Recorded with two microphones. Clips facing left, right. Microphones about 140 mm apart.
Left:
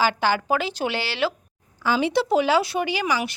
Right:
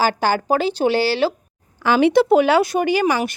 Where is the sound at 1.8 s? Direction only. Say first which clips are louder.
Right 7 dB; 65° right (ahead or behind); by 3.3 s 50° right (ahead or behind).